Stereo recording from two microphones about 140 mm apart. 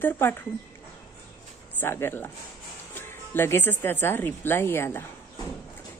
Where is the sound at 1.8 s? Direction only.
15° left (ahead or behind).